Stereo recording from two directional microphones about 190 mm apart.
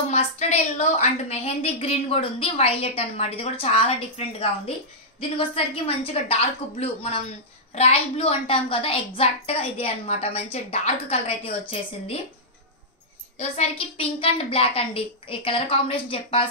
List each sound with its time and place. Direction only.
0.1 s a woman's voice: 35° left (ahead or behind)
13.4 s a woman's voice: 30° left (ahead or behind)